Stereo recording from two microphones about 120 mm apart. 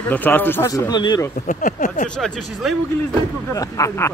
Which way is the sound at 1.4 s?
90° left.